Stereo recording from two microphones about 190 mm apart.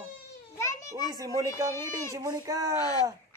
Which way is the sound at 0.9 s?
20° right (ahead or behind).